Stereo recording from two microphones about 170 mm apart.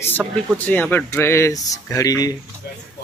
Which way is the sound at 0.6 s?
10° left (ahead or behind).